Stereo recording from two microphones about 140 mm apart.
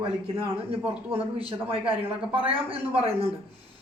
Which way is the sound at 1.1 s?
40° right (ahead or behind).